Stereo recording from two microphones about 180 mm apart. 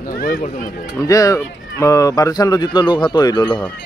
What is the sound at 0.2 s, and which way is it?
Speech, 50° left (ahead or behind).